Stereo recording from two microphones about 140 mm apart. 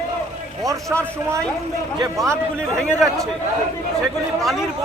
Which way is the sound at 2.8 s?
5° left (ahead or behind).